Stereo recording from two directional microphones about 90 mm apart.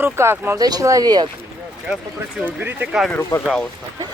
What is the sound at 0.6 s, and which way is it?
Speech, 40° right (ahead or behind).